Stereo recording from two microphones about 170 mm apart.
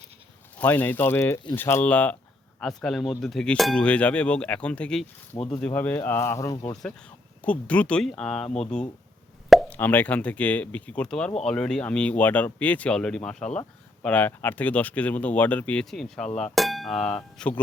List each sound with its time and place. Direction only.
0.6 s speech: 10° left (ahead or behind)
9.5 s plop: centre (ahead or behind)
9.7 s speech: 10° left (ahead or behind)
16.4 s a sound: centre (ahead or behind)